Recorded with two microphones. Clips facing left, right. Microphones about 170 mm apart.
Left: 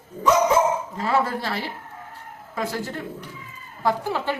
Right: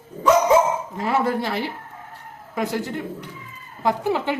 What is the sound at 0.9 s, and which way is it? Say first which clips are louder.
Speech: right 2 dB; 20° right (ahead or behind).